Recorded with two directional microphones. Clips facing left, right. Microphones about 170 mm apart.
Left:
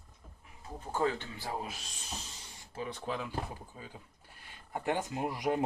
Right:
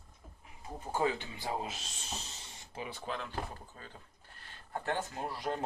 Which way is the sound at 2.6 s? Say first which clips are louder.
Left 3 dB; 20° right (ahead or behind).